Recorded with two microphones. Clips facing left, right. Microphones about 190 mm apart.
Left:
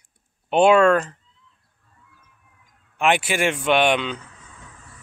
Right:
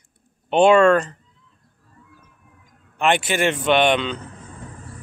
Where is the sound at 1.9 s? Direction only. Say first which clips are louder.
Right 7 dB; 40° right (ahead or behind).